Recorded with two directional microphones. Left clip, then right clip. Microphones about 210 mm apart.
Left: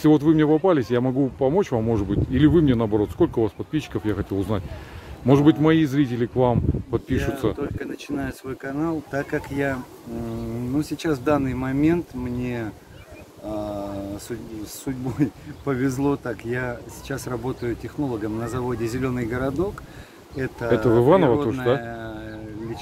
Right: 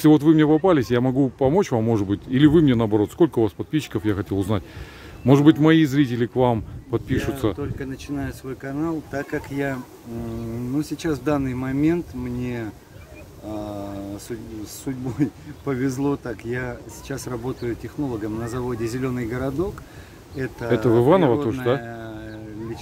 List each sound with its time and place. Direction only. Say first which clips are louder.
0.0 s speech: right 2 dB; 20° right (ahead or behind)
7.5 s speech: left 1 dB; 5° right (ahead or behind)